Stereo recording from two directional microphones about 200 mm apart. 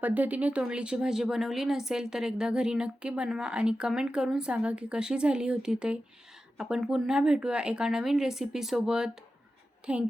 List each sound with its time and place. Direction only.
0.0 s speech: 10° right (ahead or behind)